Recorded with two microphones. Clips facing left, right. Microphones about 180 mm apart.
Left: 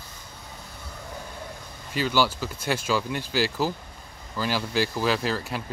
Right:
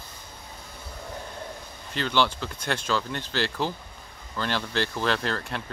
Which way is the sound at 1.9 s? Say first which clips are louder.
Left 1 dB; 5° left (ahead or behind).